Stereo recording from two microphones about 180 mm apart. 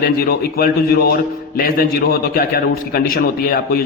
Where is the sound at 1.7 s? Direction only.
55° left (ahead or behind).